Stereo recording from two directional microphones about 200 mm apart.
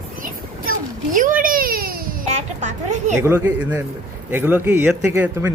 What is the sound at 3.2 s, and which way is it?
A man's voice, 10° right (ahead or behind).